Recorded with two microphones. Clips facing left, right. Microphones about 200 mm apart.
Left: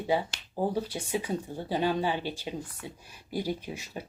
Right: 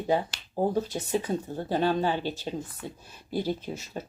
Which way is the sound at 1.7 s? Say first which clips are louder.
Right 2 dB; 45° right (ahead or behind).